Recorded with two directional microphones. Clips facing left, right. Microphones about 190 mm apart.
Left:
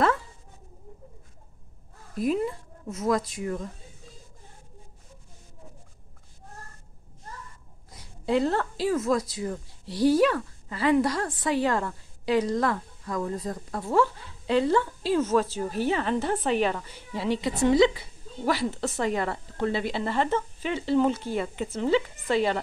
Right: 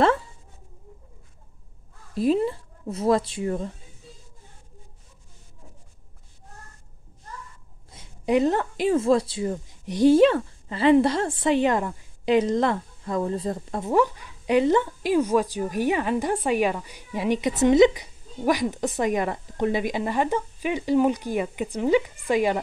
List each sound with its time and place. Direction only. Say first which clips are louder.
2.1 s speech: right 4 dB; 30° right (ahead or behind)
7.9 s speech: right 3 dB; 20° right (ahead or behind)